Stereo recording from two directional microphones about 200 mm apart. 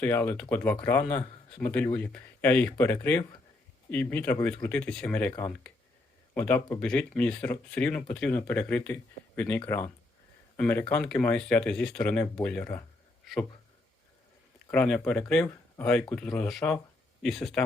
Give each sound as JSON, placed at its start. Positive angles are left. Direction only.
{"t": 0.0, "sound": "speech", "side_deg": 10}
{"t": 6.3, "sound": "speech", "side_deg": 10}
{"t": 14.7, "sound": "speech", "side_deg": 5}